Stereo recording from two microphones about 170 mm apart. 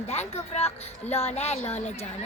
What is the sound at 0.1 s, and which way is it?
Speech, 40° left (ahead or behind).